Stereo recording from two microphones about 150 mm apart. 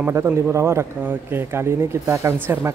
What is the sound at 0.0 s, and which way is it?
Speech, 15° right (ahead or behind).